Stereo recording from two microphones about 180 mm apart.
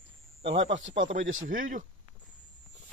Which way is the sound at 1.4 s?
50° right (ahead or behind).